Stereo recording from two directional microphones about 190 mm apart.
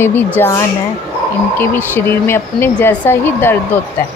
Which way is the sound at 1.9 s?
10° left (ahead or behind).